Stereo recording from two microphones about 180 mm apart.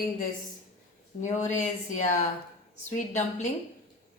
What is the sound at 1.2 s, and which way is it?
A woman's voice, 40° left (ahead or behind).